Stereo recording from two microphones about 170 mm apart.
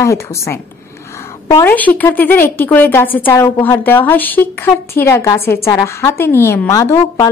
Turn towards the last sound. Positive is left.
turn(degrees=15)  # may be behind; listen again after turning